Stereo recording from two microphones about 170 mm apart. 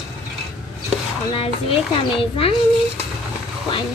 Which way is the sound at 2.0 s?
35° left (ahead or behind).